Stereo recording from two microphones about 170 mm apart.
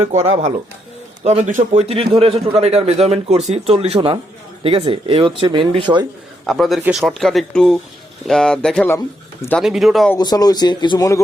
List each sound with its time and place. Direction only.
0.0 s speech: 45° right (ahead or behind)
6.4 s a man's voice: centre (ahead or behind)
10.2 s speech: 25° left (ahead or behind)